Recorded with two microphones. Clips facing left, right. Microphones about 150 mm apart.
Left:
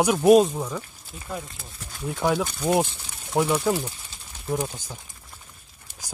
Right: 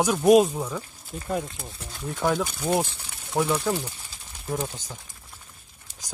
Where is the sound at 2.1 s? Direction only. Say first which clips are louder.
Left 1 dB; 10° left (ahead or behind).